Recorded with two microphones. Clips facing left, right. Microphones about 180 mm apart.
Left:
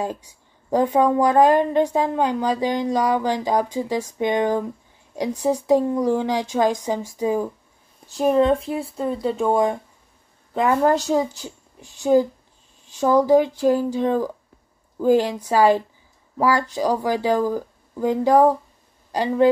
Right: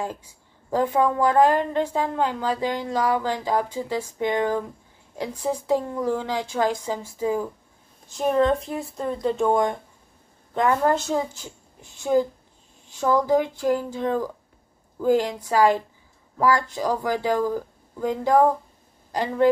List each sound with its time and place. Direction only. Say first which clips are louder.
0.7 s a woman's voice: left 3 dB; 15° left (ahead or behind)
5.7 s a woman's voice: left 5 dB; 15° left (ahead or behind)
8.2 s a woman's voice: left 3 dB; 5° left (ahead or behind)
12.1 s a woman's voice: left 4 dB; 20° left (ahead or behind)